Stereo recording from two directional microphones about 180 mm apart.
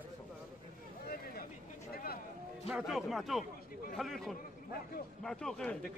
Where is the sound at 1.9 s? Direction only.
60° left (ahead or behind).